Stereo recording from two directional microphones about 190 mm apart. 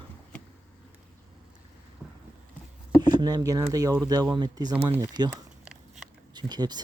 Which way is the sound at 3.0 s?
20° right (ahead or behind).